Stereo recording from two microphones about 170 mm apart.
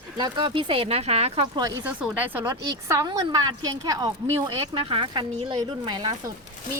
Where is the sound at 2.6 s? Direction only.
20° right (ahead or behind).